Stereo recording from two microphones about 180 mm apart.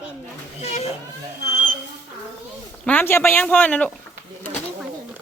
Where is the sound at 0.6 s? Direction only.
35° left (ahead or behind).